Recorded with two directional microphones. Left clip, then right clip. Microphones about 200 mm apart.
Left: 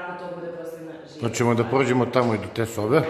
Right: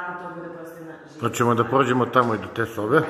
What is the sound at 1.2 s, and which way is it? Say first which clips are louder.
A man's voice: right 2 dB; 5° right (ahead or behind).